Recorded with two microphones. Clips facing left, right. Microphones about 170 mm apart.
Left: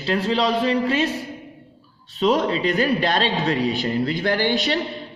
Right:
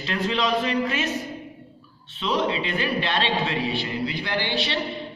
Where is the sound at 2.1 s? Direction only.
40° left (ahead or behind).